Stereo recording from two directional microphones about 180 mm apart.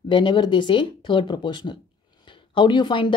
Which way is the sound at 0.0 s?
25° left (ahead or behind).